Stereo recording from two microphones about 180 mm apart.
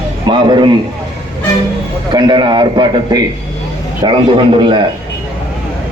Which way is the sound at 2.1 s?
25° right (ahead or behind).